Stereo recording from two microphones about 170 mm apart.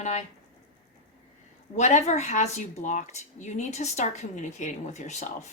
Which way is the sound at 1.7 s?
45° left (ahead or behind).